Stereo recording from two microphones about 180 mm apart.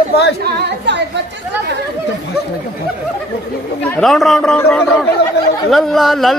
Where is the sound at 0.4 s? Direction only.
65° right (ahead or behind).